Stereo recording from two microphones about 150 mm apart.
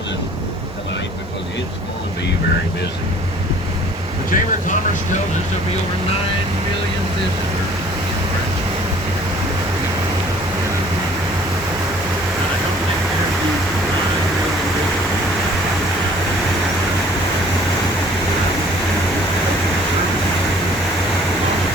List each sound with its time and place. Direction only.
4.3 s speech: 60° left (ahead or behind)